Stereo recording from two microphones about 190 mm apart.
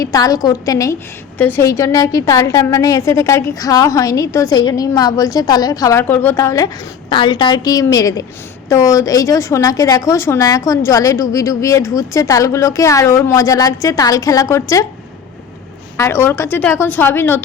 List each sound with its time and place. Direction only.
0.0 s a woman's voice: 20° left (ahead or behind)
16.0 s a woman's voice: 15° left (ahead or behind)